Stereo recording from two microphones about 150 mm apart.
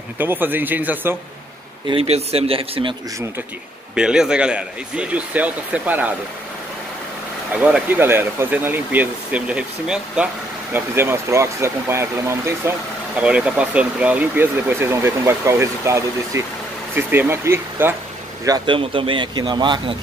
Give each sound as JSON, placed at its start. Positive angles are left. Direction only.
{"t": 0.2, "sound": "speech", "side_deg": -15}
{"t": 1.9, "sound": "speech", "side_deg": -40}
{"t": 3.9, "sound": "speech", "side_deg": -5}
{"t": 7.5, "sound": "speech", "side_deg": -10}
{"t": 13.2, "sound": "speech", "side_deg": -5}
{"t": 18.8, "sound": "speech", "side_deg": -35}